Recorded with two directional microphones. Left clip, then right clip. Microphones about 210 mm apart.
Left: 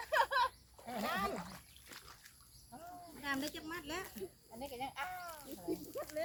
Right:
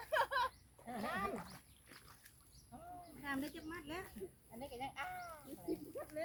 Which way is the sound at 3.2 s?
55° left (ahead or behind).